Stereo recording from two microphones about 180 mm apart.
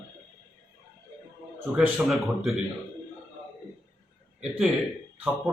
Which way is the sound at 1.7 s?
5° right (ahead or behind).